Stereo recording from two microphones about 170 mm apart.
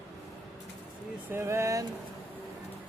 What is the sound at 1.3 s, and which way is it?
Speech, 15° right (ahead or behind).